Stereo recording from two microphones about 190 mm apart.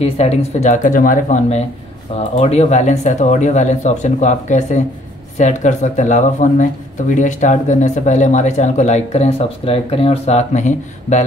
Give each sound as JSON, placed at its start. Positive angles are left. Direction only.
{"t": 0.0, "sound": "speech", "side_deg": 35}